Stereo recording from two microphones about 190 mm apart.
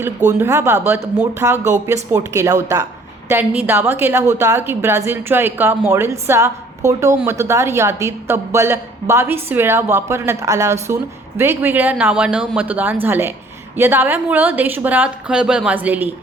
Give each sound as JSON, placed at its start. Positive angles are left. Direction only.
{"t": 0.3, "sound": "a woman's voice", "side_deg": -15}